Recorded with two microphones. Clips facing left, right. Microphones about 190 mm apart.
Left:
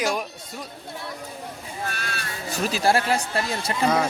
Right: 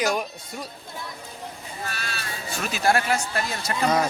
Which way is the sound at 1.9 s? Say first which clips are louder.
Left 2 dB; 55° left (ahead or behind).